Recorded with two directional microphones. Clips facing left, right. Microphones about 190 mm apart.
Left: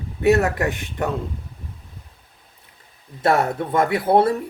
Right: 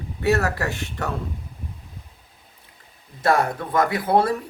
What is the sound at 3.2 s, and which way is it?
Speech, 25° left (ahead or behind).